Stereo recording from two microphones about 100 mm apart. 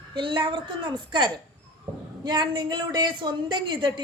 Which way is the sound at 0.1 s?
55° right (ahead or behind).